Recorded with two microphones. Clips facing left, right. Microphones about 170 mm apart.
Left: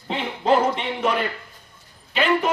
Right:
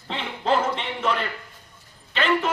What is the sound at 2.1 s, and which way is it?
Speech, 10° left (ahead or behind).